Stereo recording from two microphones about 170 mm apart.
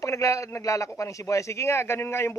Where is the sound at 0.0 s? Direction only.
20° left (ahead or behind).